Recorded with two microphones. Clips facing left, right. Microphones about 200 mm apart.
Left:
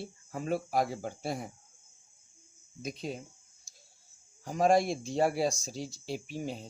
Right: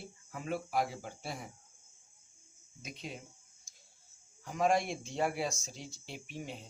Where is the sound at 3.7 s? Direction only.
35° left (ahead or behind).